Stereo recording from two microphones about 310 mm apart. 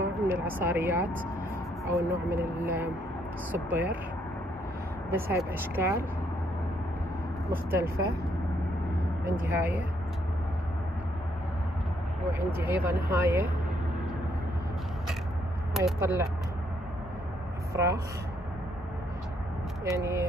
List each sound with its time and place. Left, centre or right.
0.0 s a sound: centre
1.9 s speech: centre
5.1 s speech: centre
7.4 s speech: centre
9.4 s speech: centre
12.4 s speech: centre
15.7 s speech: centre
17.7 s speech: centre
19.8 s speech: centre